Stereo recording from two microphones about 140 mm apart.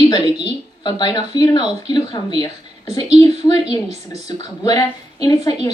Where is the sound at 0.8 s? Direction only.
30° left (ahead or behind).